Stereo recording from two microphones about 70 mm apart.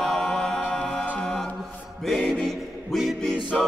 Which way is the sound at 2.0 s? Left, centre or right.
Centre.